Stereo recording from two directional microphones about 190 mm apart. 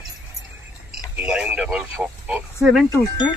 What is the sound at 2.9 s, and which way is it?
Speech, 20° left (ahead or behind).